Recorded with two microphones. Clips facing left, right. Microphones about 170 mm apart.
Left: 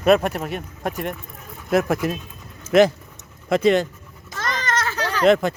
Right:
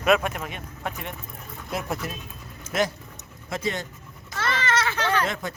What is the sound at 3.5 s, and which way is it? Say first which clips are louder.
Speech: left 12 dB; 70° left (ahead or behind).